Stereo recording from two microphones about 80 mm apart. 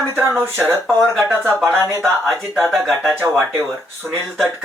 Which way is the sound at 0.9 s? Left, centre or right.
Centre.